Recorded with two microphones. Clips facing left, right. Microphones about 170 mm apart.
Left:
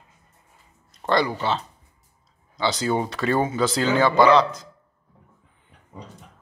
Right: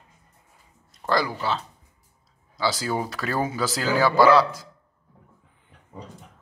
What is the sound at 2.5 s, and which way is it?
Speech, 5° right (ahead or behind).